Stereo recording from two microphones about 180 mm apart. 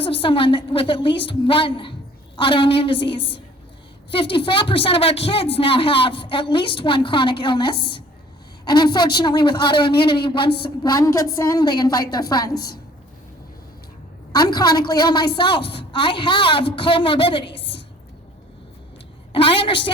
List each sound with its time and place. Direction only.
0.0 s a woman's voice: 30° left (ahead or behind)
12.5 s a woman's voice: 60° left (ahead or behind)
14.3 s a woman's voice: 20° left (ahead or behind)
19.3 s a sound: 30° left (ahead or behind)